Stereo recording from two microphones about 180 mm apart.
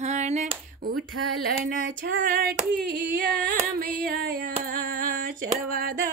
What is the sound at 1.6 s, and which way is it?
Female singing, 50° right (ahead or behind).